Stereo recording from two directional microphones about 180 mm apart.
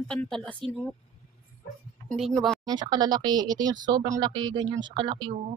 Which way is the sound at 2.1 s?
Centre (ahead or behind).